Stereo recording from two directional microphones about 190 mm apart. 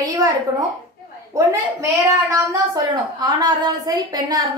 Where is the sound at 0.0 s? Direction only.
20° right (ahead or behind).